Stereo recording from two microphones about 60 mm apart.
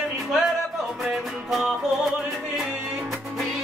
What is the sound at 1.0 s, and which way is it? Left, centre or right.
Music, centre.